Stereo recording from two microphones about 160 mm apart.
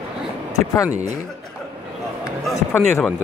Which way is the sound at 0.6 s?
20° left (ahead or behind).